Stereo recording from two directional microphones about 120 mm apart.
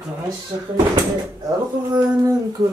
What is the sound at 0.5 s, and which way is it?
Speech, 40° right (ahead or behind).